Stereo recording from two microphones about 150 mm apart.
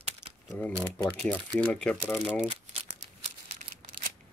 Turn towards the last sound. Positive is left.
turn(degrees=-55)  # may be behind; listen again after turning